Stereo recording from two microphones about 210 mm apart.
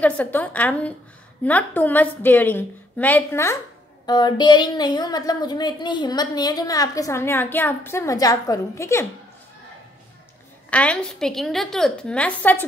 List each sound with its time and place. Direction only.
0.0 s a woman's voice: 10° left (ahead or behind)
10.7 s a woman's voice: 5° left (ahead or behind)